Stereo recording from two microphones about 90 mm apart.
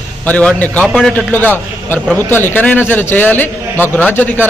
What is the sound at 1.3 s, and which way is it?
A man's voice, 20° left (ahead or behind).